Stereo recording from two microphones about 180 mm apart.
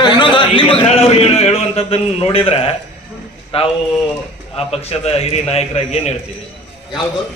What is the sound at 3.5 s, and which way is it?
A man's voice, 30° left (ahead or behind).